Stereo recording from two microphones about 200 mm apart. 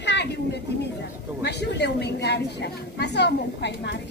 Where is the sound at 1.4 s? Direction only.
55° left (ahead or behind).